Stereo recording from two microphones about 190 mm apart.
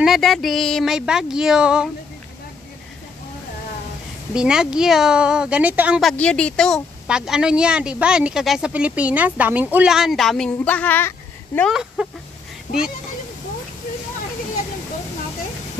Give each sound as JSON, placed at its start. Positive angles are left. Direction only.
{"t": 0.0, "sound": "speech", "side_deg": 0}
{"t": 4.3, "sound": "speech", "side_deg": -5}
{"t": 11.7, "sound": "speech", "side_deg": -5}
{"t": 12.7, "sound": "a child's voice", "side_deg": 40}